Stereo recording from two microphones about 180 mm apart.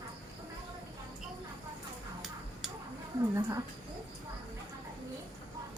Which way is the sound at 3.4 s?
15° right (ahead or behind).